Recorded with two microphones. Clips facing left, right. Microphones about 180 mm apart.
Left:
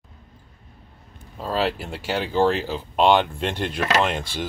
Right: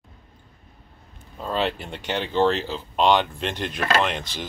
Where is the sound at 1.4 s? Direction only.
5° left (ahead or behind).